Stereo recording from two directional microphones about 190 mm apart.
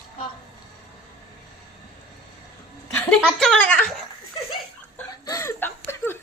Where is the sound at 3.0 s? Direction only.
Centre (ahead or behind).